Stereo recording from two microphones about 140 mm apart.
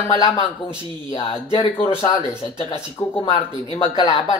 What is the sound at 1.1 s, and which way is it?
Speech, 40° left (ahead or behind).